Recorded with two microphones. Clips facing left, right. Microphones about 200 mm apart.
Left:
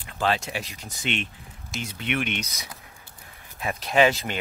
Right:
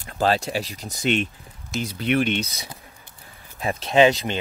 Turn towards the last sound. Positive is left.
turn(degrees=-20)  # may be behind; listen again after turning